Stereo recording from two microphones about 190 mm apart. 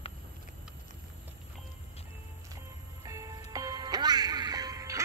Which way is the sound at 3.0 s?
15° right (ahead or behind).